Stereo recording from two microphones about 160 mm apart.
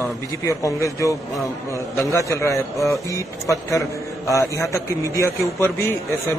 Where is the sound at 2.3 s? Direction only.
20° left (ahead or behind).